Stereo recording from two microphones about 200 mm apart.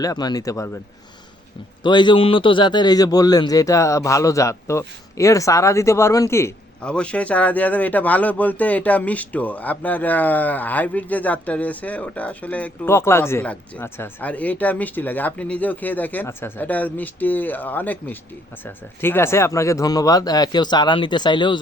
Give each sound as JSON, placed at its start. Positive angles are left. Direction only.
{"t": 0.0, "sound": "a man's voice", "side_deg": 20}
{"t": 1.8, "sound": "a man's voice", "side_deg": 20}